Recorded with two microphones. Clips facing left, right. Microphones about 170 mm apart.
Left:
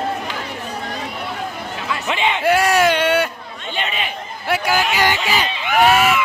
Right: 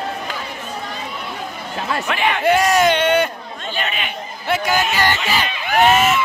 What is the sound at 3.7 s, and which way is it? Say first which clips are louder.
Chatter: left 1 dB; 25° left (ahead or behind).